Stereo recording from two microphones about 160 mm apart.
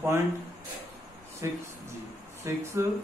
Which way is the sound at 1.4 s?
20° right (ahead or behind).